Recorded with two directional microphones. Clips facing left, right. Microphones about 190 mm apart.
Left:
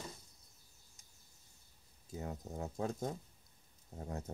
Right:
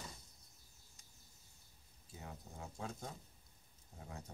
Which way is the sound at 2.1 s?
40° left (ahead or behind).